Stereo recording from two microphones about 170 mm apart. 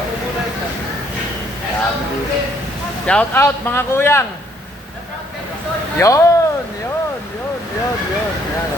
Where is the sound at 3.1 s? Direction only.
10° left (ahead or behind).